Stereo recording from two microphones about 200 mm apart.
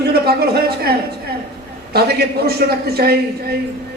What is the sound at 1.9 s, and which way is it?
A man's voice, 50° right (ahead or behind).